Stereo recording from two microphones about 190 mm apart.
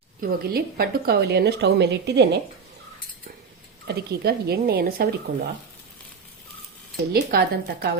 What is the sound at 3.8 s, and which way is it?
A woman's voice, 60° right (ahead or behind).